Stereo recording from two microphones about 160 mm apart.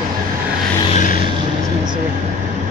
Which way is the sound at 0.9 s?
55° left (ahead or behind).